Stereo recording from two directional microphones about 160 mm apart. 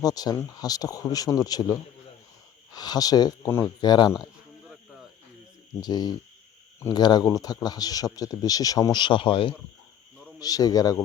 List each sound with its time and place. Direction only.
0.0 s speech: 25° left (ahead or behind)
5.8 s speech: 25° left (ahead or behind)